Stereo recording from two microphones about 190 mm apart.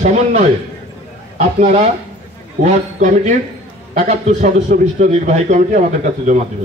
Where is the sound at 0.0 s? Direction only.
35° right (ahead or behind).